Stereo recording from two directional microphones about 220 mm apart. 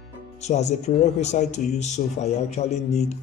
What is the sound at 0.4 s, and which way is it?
A man's voice, 30° left (ahead or behind).